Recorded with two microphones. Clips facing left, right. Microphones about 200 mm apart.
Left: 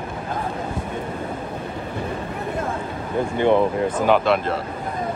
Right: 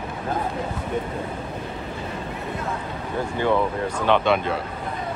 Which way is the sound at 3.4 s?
20° left (ahead or behind).